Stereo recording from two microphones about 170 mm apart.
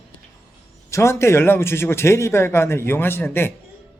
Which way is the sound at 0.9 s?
15° left (ahead or behind).